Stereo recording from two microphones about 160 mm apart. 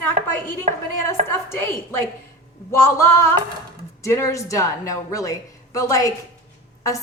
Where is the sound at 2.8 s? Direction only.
15° left (ahead or behind).